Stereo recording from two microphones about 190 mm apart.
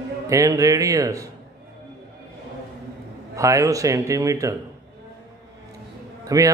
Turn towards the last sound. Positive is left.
turn(degrees=-20)  # may be behind; listen again after turning